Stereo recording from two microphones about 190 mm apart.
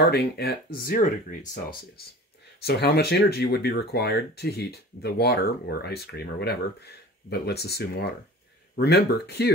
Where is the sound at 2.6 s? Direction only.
55° left (ahead or behind).